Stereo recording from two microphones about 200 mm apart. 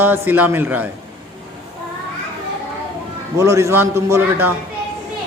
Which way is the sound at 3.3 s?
15° right (ahead or behind).